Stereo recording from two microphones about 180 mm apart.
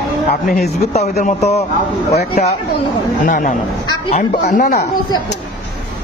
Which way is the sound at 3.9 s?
25° left (ahead or behind).